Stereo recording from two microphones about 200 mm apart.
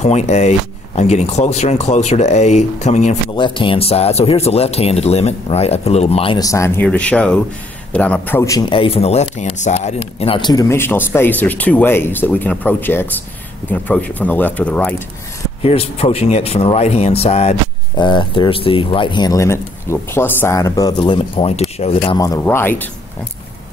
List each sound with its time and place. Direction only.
0.0 s speech: 35° left (ahead or behind)
3.3 s a man's voice: 25° left (ahead or behind); by 15.0 s 5° left (ahead or behind)
15.6 s speech: 30° left (ahead or behind); by 22.8 s 10° left (ahead or behind)